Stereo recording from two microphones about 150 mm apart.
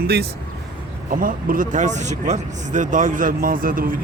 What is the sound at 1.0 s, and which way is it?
Speech, 65° right (ahead or behind).